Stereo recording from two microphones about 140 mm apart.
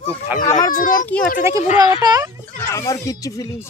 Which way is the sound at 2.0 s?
25° right (ahead or behind).